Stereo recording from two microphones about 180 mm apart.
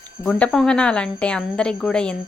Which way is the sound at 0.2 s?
5° left (ahead or behind).